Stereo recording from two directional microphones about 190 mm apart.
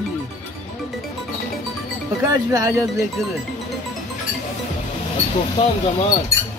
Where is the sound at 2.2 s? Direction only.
20° right (ahead or behind).